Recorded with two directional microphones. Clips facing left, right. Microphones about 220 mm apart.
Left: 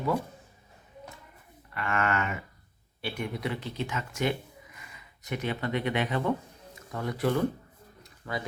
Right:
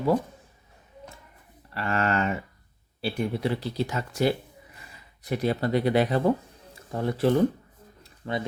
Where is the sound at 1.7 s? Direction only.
30° right (ahead or behind).